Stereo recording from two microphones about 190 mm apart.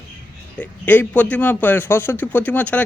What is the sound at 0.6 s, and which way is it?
Speech, 10° left (ahead or behind).